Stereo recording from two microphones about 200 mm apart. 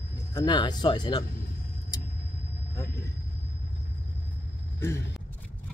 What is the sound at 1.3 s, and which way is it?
Vehicle, 45° left (ahead or behind).